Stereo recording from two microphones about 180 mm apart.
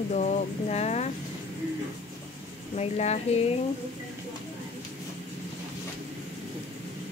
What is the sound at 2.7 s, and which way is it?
Speech, 40° left (ahead or behind).